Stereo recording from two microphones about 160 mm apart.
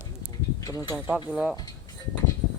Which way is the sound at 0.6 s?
25° left (ahead or behind).